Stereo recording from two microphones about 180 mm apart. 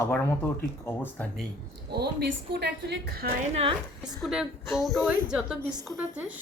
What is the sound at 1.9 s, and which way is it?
A woman's voice, 65° right (ahead or behind).